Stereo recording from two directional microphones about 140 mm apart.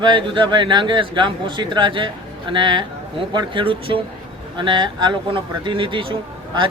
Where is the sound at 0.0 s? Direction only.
35° right (ahead or behind).